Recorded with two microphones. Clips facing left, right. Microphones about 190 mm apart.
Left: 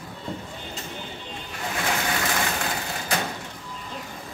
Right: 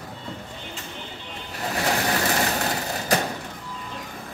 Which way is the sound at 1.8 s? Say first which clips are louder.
Right 3 dB; 40° right (ahead or behind).